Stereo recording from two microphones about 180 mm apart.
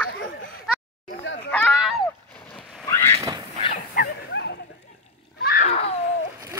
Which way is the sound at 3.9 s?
65° left (ahead or behind).